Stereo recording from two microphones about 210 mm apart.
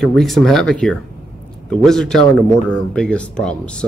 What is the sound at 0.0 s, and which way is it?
Speech, centre (ahead or behind).